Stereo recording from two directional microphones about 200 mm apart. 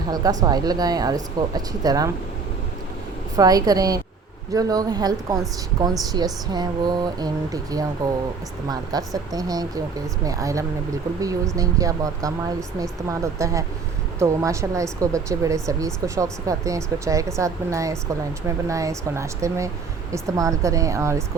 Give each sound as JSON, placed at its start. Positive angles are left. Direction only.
{"t": 0.1, "sound": "speech", "side_deg": -20}
{"t": 3.3, "sound": "speech", "side_deg": -20}